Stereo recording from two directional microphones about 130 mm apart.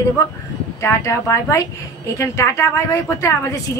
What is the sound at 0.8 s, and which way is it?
A woman's voice, 25° left (ahead or behind).